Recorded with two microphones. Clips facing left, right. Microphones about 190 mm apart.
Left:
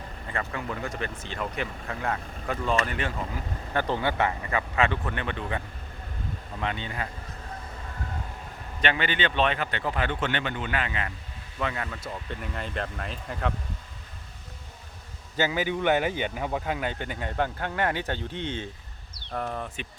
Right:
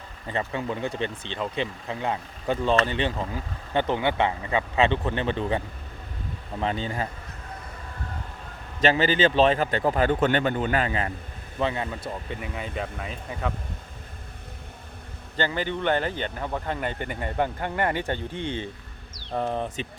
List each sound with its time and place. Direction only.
0.3 s a man's voice: 25° right (ahead or behind)
8.8 s a man's voice: 35° right (ahead or behind)
11.6 s speech: 25° right (ahead or behind)
12.3 s speech: 5° right (ahead or behind)
15.4 s speech: 5° left (ahead or behind)
19.3 s speech: 25° right (ahead or behind)